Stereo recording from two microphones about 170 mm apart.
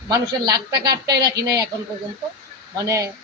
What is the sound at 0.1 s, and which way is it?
Speech, 20° right (ahead or behind).